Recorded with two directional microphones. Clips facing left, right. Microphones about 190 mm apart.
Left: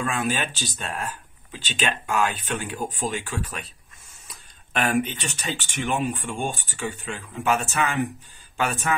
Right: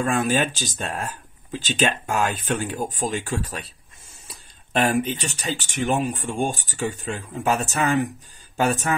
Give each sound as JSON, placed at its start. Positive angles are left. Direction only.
{"t": 0.0, "sound": "speech", "side_deg": -45}